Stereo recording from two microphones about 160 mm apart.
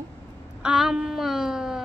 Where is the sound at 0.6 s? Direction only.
5° right (ahead or behind).